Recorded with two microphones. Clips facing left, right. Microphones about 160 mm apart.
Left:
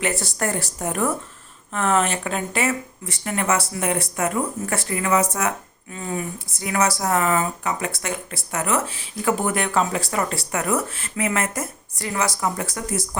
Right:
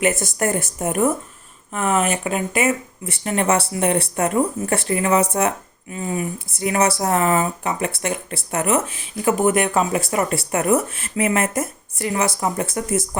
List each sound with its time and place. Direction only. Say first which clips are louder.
0.0 s speech: right 4 dB; 20° right (ahead or behind)
1.7 s speech: right 1 dB; 10° right (ahead or behind)
3.1 s speech: right 4 dB; 25° right (ahead or behind)
5.9 s speech: right 3 dB; 15° right (ahead or behind)